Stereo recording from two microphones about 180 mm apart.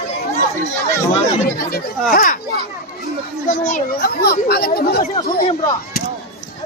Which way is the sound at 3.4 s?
50° left (ahead or behind).